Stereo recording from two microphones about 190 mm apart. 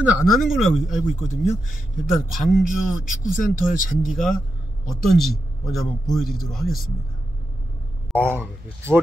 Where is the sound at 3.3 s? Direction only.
45° left (ahead or behind).